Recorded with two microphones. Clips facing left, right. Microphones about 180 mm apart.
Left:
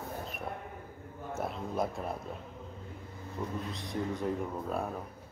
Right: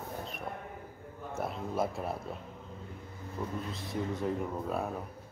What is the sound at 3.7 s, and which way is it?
Speech, centre (ahead or behind).